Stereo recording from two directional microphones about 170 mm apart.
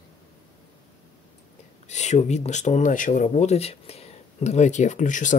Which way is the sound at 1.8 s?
45° left (ahead or behind).